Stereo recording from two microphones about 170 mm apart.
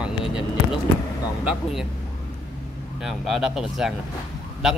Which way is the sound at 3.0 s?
Centre (ahead or behind).